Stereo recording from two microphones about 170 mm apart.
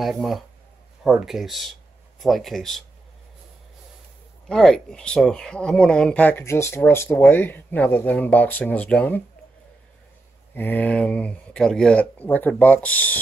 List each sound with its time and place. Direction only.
0.0 s speech: centre (ahead or behind)
4.5 s speech: 5° left (ahead or behind)
10.5 s speech: 10° left (ahead or behind)